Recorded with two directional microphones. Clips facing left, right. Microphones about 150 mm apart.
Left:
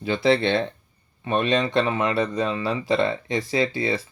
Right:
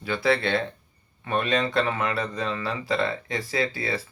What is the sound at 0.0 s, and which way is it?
Speech, 20° left (ahead or behind).